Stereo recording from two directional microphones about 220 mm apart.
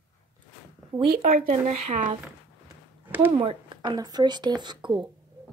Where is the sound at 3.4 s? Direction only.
20° right (ahead or behind).